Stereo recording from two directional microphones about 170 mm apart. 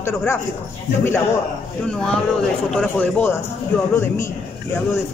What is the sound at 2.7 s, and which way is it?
A man's voice, 10° left (ahead or behind).